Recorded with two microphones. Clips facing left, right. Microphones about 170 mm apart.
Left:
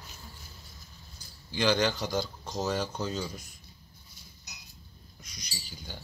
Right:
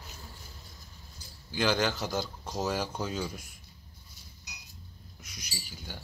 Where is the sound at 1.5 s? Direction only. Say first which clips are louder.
Left 2 dB; 5° right (ahead or behind).